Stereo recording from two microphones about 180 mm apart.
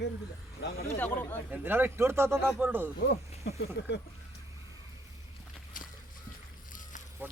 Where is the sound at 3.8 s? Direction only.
70° left (ahead or behind).